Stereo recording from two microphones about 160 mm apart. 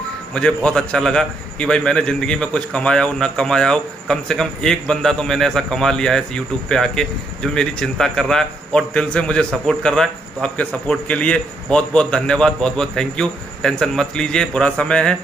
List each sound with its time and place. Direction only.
0.3 s a man's voice: 5° left (ahead or behind)